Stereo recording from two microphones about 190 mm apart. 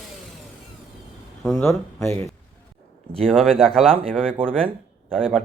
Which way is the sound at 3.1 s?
5° left (ahead or behind).